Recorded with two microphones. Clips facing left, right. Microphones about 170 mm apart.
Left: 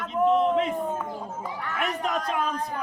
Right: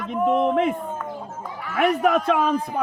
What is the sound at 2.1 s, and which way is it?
Speech, 60° right (ahead or behind).